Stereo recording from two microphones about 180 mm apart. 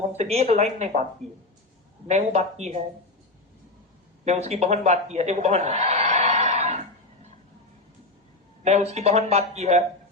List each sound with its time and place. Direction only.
0.2 s speech: 35° right (ahead or behind)
2.0 s speech: 40° right (ahead or behind)
4.3 s a man's voice: 35° right (ahead or behind)
8.6 s speech: 35° right (ahead or behind)